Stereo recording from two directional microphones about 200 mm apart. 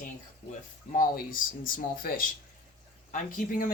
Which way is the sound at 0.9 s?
45° left (ahead or behind).